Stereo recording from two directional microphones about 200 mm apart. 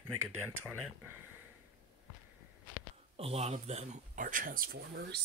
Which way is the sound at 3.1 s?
30° right (ahead or behind).